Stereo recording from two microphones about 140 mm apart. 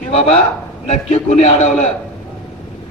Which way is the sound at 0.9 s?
55° left (ahead or behind).